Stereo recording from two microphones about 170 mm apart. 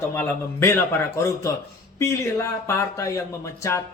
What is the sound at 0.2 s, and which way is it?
Speech, 15° left (ahead or behind).